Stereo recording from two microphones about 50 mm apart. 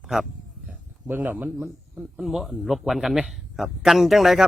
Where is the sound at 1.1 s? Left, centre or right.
Right.